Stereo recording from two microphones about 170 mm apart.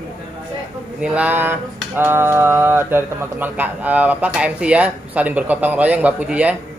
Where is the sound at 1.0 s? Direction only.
10° right (ahead or behind).